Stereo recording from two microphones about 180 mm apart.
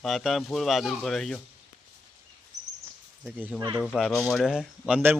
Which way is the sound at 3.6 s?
25° right (ahead or behind).